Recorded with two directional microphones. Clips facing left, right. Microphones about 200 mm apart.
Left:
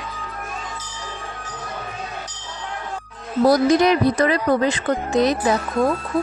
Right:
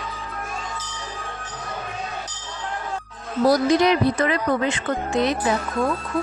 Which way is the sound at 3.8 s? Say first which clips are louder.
Left 2 dB; 40° left (ahead or behind).